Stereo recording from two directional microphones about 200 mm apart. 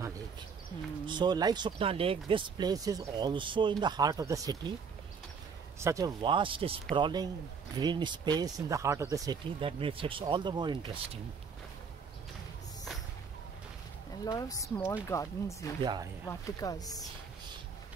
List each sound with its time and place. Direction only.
1.0 s speech: 20° right (ahead or behind)
5.8 s speech: 15° right (ahead or behind)
14.2 s speech: 20° left (ahead or behind)
15.8 s speech: 20° right (ahead or behind)
16.3 s speech: 15° left (ahead or behind)